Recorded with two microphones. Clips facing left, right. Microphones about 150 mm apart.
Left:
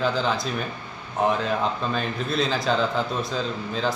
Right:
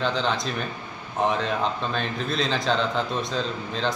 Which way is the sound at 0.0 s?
5° left (ahead or behind).